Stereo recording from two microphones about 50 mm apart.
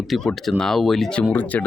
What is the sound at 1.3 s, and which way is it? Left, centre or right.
Speech, left.